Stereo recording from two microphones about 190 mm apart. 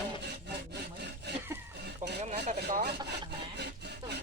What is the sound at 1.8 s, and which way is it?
Chicken, 60° right (ahead or behind).